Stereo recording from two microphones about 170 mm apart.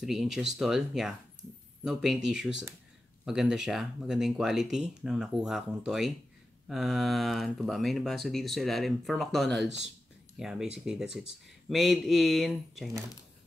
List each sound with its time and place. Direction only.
0.0 s speech: centre (ahead or behind)